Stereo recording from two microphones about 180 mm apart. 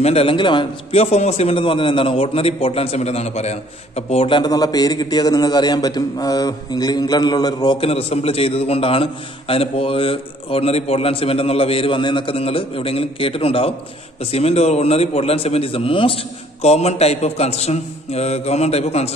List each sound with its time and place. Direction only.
0.0 s a man's voice: 35° left (ahead or behind)